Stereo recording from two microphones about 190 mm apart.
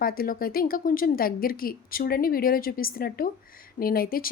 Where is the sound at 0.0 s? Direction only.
50° left (ahead or behind).